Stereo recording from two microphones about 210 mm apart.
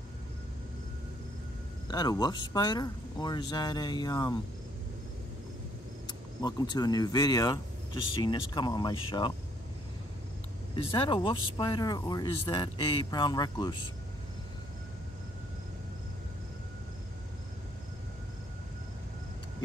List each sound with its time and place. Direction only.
1.9 s speech: 20° left (ahead or behind)
6.0 s speech: 20° left (ahead or behind)
10.8 s speech: 25° left (ahead or behind)